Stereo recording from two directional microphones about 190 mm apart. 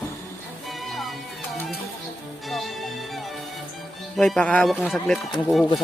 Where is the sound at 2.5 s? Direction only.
Centre (ahead or behind).